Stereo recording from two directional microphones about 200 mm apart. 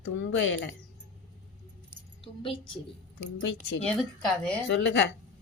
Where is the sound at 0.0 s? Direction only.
75° left (ahead or behind).